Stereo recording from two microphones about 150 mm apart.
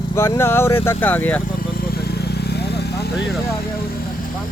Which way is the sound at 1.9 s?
90° left.